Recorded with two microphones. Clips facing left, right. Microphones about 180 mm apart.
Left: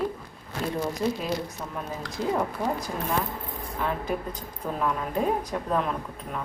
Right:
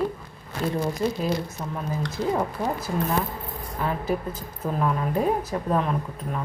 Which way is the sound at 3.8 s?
5° right (ahead or behind).